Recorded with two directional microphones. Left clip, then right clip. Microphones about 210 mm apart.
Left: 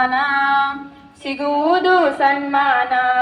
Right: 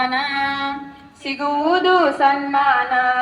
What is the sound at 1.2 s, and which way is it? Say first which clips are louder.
A woman's voice: left 2 dB; 50° left (ahead or behind).